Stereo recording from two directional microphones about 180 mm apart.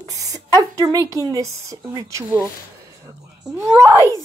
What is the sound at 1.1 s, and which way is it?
A woman's voice, 20° right (ahead or behind).